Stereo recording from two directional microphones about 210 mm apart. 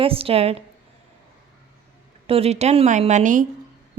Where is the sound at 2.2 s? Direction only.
30° right (ahead or behind).